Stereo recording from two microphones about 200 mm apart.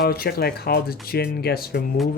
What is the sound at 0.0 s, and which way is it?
Speech, 50° left (ahead or behind).